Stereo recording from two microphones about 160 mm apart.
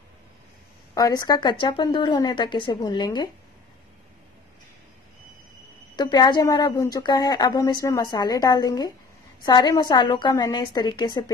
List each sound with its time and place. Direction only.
0.9 s a woman's voice: 20° left (ahead or behind)
5.9 s a woman's voice: 25° left (ahead or behind)